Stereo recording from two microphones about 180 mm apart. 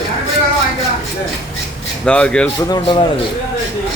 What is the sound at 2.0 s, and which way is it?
Speech, 5° left (ahead or behind).